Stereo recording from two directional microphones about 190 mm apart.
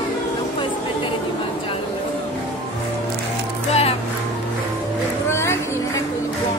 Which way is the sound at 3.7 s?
35° left (ahead or behind).